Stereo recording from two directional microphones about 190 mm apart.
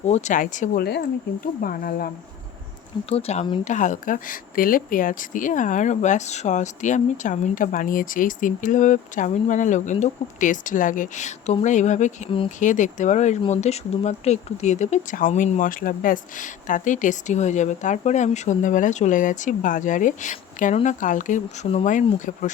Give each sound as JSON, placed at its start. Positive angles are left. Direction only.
{"t": 0.0, "sound": "speech", "side_deg": 35}
{"t": 3.1, "sound": "speech", "side_deg": 30}
{"t": 3.6, "sound": "speech", "side_deg": 40}